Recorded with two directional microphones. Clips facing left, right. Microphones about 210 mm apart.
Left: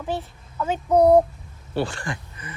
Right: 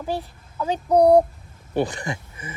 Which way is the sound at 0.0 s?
15° right (ahead or behind).